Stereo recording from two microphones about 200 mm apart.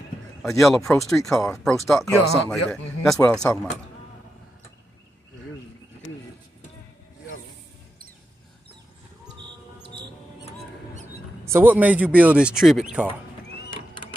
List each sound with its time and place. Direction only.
0.4 s speech: centre (ahead or behind)
9.8 s a sound: 55° right (ahead or behind)
11.5 s a man's voice: 10° right (ahead or behind)